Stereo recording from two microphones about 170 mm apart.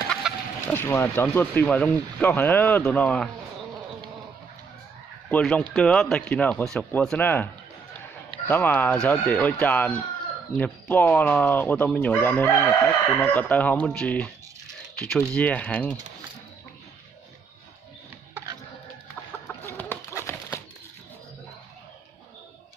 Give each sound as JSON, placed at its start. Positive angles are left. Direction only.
{"t": 0.1, "sound": "speech", "side_deg": 5}
{"t": 5.3, "sound": "speech", "side_deg": 5}
{"t": 8.5, "sound": "speech", "side_deg": 10}
{"t": 18.3, "sound": "a sound", "side_deg": -20}
{"t": 19.6, "sound": "chicken", "side_deg": 15}
{"t": 20.2, "sound": "a sound", "side_deg": 15}